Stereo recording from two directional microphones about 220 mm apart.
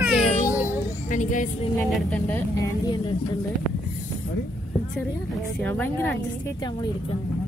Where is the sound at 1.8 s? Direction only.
5° left (ahead or behind).